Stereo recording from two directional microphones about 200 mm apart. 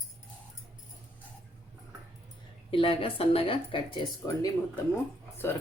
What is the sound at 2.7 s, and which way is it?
Speech, 25° left (ahead or behind).